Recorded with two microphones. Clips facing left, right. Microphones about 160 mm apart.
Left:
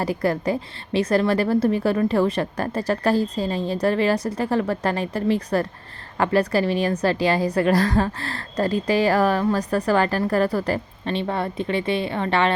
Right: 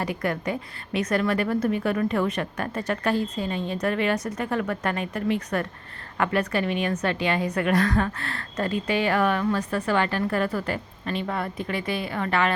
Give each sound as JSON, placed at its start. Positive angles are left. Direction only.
{"t": 0.0, "sound": "a woman's voice", "side_deg": 35}